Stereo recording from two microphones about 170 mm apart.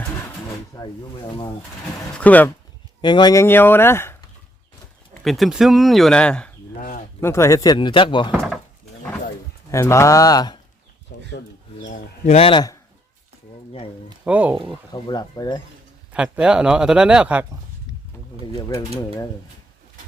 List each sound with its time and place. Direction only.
0.8 s speech: 30° left (ahead or behind)
2.1 s speech: 10° left (ahead or behind)
3.0 s speech: 25° left (ahead or behind)
3.4 s speech: 10° left (ahead or behind)
5.2 s speech: centre (ahead or behind); by 8.3 s 30° left (ahead or behind)
9.7 s speech: 15° left (ahead or behind)
11.1 s a sound: 70° left (ahead or behind)
11.8 s speech: 45° left (ahead or behind); by 12.8 s 25° left (ahead or behind)
14.3 s speech: 10° right (ahead or behind)
14.9 s speech: 25° left (ahead or behind)
16.1 s speech: 5° right (ahead or behind)